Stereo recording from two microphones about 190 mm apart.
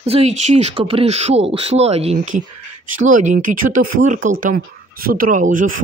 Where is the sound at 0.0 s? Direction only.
35° right (ahead or behind).